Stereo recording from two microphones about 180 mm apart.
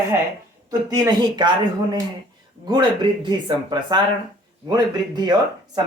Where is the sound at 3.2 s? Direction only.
25° right (ahead or behind).